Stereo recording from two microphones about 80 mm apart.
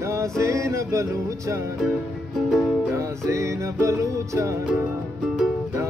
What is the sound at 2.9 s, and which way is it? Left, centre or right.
Music, right.